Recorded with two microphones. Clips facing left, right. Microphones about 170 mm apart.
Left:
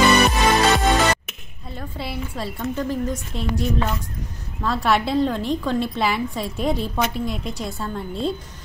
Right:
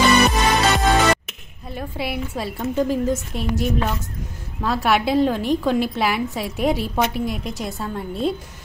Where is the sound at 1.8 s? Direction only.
10° right (ahead or behind).